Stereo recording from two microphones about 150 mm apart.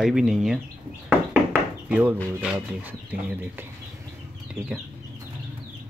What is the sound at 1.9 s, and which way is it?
Speech, 10° right (ahead or behind).